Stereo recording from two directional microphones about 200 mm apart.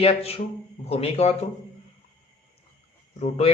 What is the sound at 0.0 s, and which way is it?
A man's voice, 30° left (ahead or behind).